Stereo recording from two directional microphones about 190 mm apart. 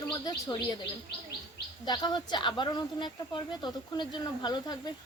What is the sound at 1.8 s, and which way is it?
Speech, 20° left (ahead or behind).